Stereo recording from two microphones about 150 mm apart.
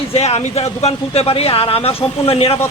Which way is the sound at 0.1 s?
40° left (ahead or behind).